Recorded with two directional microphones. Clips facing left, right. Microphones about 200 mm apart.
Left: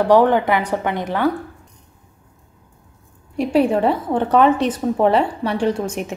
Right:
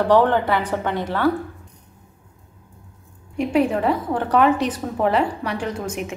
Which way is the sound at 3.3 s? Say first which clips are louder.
Left 3 dB; 30° left (ahead or behind).